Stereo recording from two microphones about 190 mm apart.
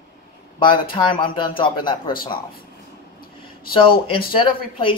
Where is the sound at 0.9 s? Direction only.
25° left (ahead or behind).